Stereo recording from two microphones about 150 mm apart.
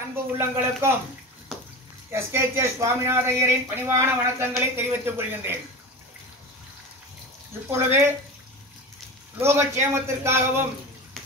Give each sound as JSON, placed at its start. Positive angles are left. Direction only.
{"t": 0.1, "sound": "speech", "side_deg": -15}
{"t": 2.1, "sound": "speech", "side_deg": -15}
{"t": 7.7, "sound": "speech", "side_deg": -15}
{"t": 9.4, "sound": "speech", "side_deg": -15}